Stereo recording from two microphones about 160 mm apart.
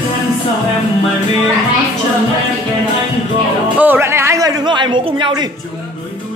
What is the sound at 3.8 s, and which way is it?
Music, 15° right (ahead or behind).